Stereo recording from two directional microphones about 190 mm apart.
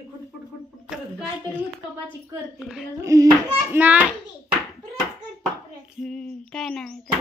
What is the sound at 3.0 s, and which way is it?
A child's voice, 15° right (ahead or behind).